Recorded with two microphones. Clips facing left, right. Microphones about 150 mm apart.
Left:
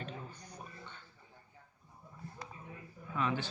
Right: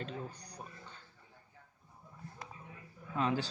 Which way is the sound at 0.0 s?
40° right (ahead or behind).